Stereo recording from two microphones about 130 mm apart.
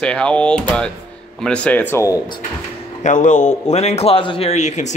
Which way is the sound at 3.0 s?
70° left (ahead or behind).